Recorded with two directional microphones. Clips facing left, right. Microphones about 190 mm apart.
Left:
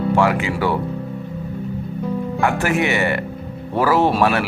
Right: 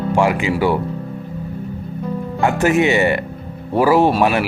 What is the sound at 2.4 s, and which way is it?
Speech, 20° right (ahead or behind).